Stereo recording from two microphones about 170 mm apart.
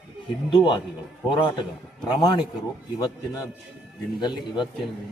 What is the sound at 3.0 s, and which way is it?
A man's voice, 20° left (ahead or behind).